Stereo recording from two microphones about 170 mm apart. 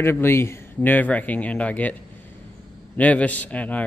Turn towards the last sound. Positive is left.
turn(degrees=10)  # may be behind; listen again after turning